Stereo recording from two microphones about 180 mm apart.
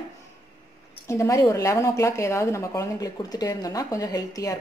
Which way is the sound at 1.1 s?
15° left (ahead or behind).